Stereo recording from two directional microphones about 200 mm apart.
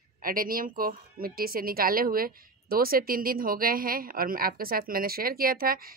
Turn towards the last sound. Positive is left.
turn(degrees=-45)  # may be behind; listen again after turning